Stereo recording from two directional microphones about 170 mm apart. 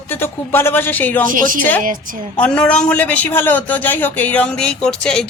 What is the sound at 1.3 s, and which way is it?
Speech, 55° right (ahead or behind).